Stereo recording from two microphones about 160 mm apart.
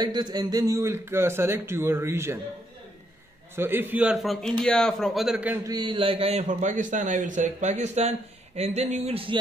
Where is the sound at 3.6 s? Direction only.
15° right (ahead or behind).